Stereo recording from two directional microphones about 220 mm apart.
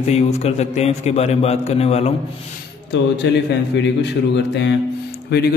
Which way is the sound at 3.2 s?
50° left (ahead or behind).